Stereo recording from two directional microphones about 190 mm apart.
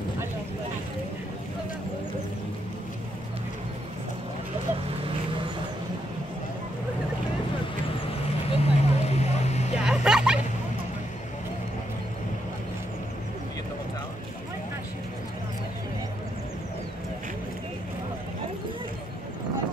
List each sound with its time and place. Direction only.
8.5 s vehicle: 30° left (ahead or behind)
9.8 s vehicle: 5° right (ahead or behind)